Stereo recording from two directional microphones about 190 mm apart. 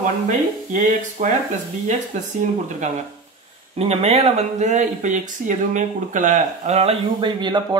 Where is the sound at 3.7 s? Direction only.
30° right (ahead or behind).